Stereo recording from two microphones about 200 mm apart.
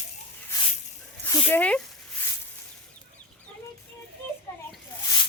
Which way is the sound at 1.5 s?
5° left (ahead or behind).